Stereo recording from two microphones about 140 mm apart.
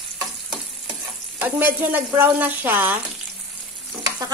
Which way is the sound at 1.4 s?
15° right (ahead or behind).